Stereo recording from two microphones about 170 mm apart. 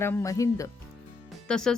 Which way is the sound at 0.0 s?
15° left (ahead or behind).